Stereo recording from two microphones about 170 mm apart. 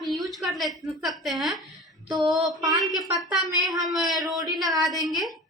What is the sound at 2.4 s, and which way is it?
Speech, 25° right (ahead or behind).